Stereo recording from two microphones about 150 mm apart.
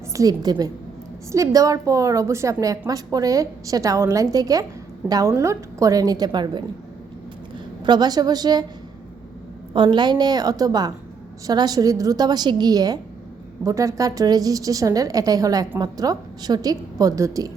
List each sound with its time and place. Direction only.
0.1 s a woman's voice: 25° right (ahead or behind)
7.9 s a woman's voice: 30° right (ahead or behind)
9.7 s a woman's voice: 30° right (ahead or behind)